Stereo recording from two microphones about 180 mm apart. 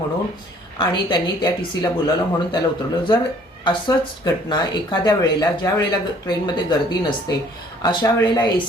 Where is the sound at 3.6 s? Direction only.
20° left (ahead or behind).